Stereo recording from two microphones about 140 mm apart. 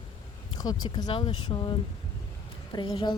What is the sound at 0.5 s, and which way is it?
A woman's voice, 30° left (ahead or behind).